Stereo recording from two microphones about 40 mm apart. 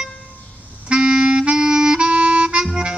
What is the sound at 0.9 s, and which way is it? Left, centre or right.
Music, right.